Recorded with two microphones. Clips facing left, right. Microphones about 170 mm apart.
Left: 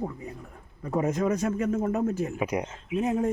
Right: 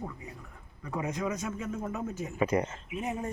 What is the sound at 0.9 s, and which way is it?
Speech, 50° left (ahead or behind).